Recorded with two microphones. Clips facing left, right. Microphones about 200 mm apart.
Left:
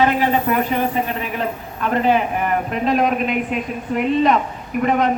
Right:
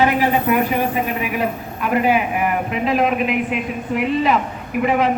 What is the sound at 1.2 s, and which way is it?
A man's voice, 10° right (ahead or behind).